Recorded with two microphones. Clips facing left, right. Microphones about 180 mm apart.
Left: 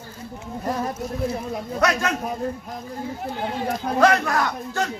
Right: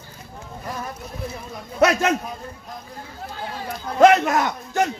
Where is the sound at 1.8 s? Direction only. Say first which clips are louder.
Right 5 dB; 25° right (ahead or behind).